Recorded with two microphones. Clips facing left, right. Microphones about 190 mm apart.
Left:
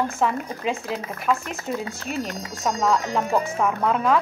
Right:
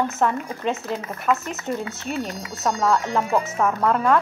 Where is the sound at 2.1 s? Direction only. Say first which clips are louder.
Right 1 dB; 30° right (ahead or behind).